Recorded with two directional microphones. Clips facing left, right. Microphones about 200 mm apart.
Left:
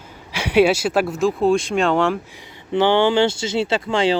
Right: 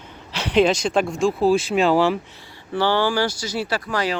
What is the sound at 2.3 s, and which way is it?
Speech, 20° left (ahead or behind).